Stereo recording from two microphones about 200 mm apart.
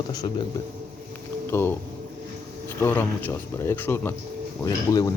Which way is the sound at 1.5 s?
10° left (ahead or behind).